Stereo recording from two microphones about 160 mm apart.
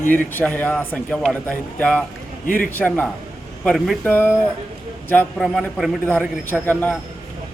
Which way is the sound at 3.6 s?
Centre (ahead or behind).